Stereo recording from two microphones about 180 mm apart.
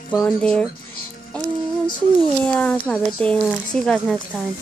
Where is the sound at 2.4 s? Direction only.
10° left (ahead or behind).